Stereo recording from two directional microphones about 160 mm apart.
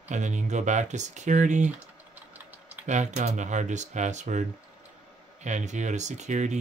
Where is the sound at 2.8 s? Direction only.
50° right (ahead or behind).